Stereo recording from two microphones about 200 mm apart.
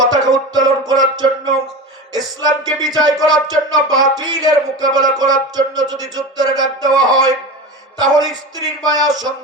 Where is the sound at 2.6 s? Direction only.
20° right (ahead or behind).